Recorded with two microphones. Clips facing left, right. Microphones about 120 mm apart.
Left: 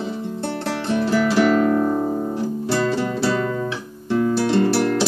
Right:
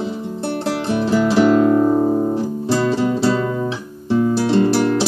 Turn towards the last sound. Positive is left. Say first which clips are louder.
# right 3 dB
turn(degrees=-25)  # may be behind; listen again after turning